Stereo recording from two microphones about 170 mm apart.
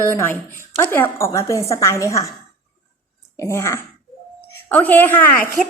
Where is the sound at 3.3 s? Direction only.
15° left (ahead or behind).